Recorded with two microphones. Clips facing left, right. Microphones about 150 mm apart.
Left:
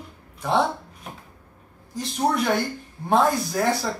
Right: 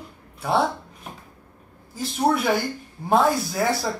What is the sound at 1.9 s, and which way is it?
Speech, 5° right (ahead or behind).